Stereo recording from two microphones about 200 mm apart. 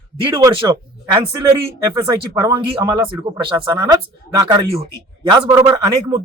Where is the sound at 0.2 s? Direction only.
25° right (ahead or behind).